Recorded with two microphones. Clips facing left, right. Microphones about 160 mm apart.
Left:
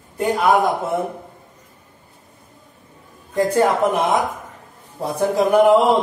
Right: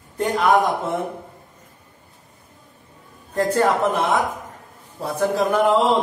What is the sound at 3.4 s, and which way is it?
Speech, 15° left (ahead or behind).